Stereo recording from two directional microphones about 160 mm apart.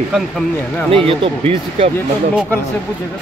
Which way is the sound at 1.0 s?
35° right (ahead or behind).